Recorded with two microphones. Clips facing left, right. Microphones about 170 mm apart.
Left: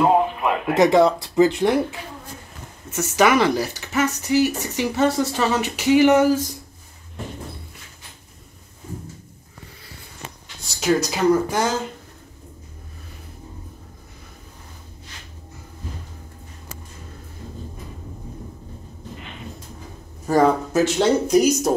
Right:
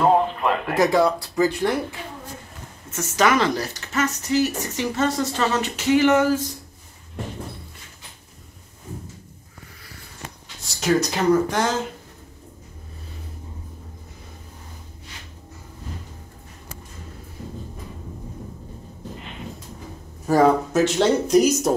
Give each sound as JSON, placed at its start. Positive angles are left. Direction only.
{"t": 0.0, "sound": "speech", "side_deg": 5}
{"t": 0.7, "sound": "speech", "side_deg": 20}
{"t": 10.7, "sound": "speech", "side_deg": 0}
{"t": 20.2, "sound": "speech", "side_deg": 0}